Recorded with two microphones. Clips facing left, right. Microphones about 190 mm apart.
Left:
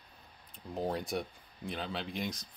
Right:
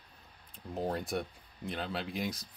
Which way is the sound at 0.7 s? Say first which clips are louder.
Even; centre (ahead or behind).